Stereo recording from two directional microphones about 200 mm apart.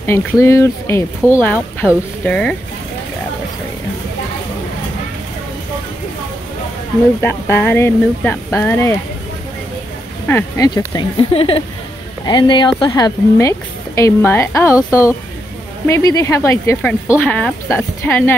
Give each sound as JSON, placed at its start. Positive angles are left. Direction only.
{"t": 0.0, "sound": "speech", "side_deg": 15}
{"t": 7.2, "sound": "speech", "side_deg": 10}
{"t": 10.2, "sound": "speech", "side_deg": 10}